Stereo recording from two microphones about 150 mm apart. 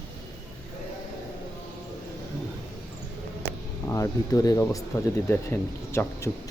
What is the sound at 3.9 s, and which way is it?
Speech, 20° left (ahead or behind).